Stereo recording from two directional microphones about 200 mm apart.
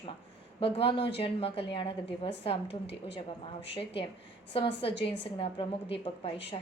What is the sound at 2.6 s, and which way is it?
Speech, 60° left (ahead or behind).